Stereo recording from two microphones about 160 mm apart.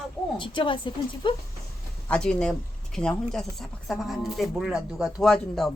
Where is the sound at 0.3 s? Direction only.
30° left (ahead or behind).